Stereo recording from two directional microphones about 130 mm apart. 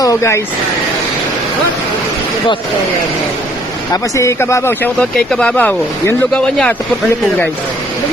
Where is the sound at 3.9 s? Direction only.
25° left (ahead or behind); by 6.7 s 10° left (ahead or behind).